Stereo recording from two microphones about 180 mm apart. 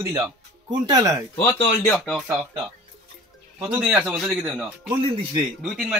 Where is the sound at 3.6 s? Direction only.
5° right (ahead or behind).